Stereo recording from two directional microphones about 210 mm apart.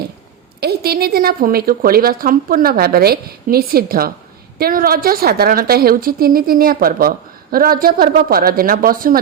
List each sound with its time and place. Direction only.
0.6 s a woman's voice: 50° right (ahead or behind)